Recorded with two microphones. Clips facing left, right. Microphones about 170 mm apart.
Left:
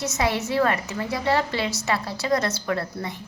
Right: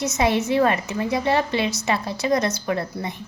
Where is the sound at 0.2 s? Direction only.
20° right (ahead or behind).